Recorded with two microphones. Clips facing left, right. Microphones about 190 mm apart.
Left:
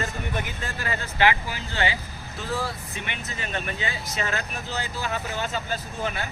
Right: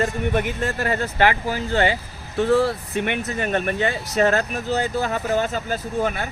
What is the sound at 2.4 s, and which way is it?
Speech, 65° right (ahead or behind).